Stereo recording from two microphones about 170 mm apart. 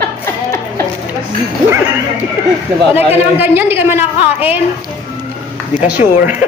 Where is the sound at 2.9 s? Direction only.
10° right (ahead or behind).